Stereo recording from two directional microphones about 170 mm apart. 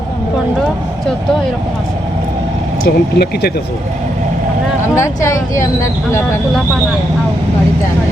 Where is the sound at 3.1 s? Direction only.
70° left (ahead or behind).